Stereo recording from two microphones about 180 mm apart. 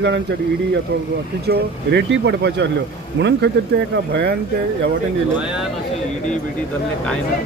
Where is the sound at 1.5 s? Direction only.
70° right (ahead or behind).